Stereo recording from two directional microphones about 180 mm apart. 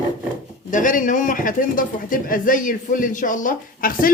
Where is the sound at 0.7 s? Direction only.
45° left (ahead or behind).